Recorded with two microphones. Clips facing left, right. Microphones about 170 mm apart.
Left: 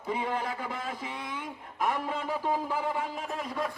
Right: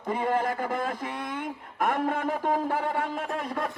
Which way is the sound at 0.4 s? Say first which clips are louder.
Right 7 dB; 50° right (ahead or behind).